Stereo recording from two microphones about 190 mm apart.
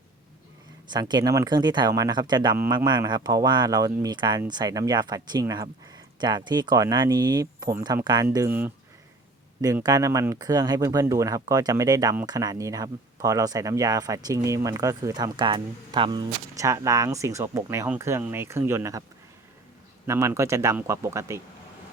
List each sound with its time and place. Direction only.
0.9 s speech: 25° right (ahead or behind)
20.1 s speech: 15° right (ahead or behind)